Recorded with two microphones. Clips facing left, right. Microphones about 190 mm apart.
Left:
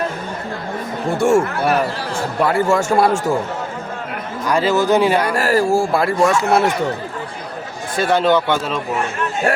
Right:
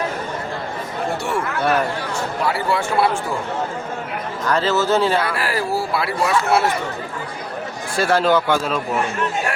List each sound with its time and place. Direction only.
1.2 s speech: 45° left (ahead or behind)
4.4 s speech: 10° left (ahead or behind)
5.3 s speech: 45° left (ahead or behind)
7.9 s a man's voice: centre (ahead or behind)